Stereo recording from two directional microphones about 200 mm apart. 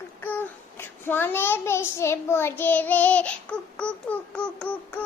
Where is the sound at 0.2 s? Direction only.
10° left (ahead or behind).